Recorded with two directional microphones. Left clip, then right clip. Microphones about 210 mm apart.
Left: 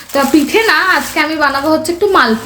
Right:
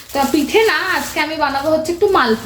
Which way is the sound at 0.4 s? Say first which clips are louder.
Left 4 dB; 20° left (ahead or behind).